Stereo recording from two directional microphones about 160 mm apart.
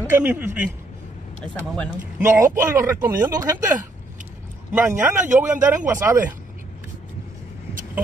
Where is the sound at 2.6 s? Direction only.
20° right (ahead or behind).